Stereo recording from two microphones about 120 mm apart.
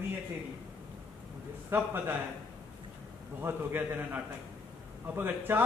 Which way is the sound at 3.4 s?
20° right (ahead or behind).